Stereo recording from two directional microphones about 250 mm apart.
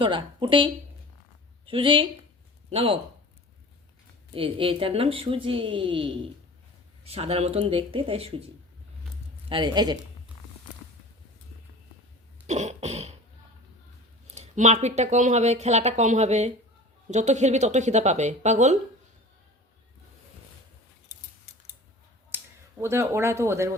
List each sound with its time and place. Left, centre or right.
0.0 s speech: centre
4.3 s speech: right
9.5 s speech: centre
12.5 s speech: right
14.3 s speech: right
22.3 s a sound: centre
22.8 s speech: centre